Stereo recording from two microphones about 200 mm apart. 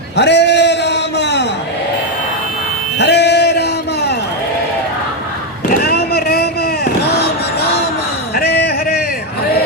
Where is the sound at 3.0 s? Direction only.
60° left (ahead or behind).